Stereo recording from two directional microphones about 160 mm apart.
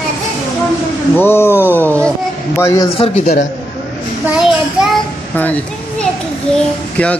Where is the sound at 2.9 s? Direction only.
35° left (ahead or behind).